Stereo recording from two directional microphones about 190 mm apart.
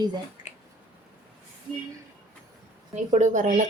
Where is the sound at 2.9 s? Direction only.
40° right (ahead or behind).